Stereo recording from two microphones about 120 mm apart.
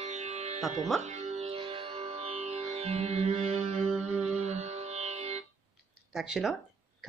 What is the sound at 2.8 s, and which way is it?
Music, 60° right (ahead or behind).